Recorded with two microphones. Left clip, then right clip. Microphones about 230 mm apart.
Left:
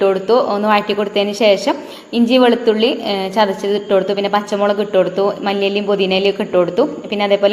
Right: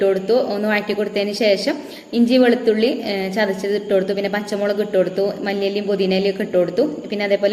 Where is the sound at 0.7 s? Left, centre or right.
Centre.